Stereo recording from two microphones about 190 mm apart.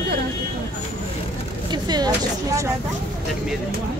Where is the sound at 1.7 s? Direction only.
20° right (ahead or behind).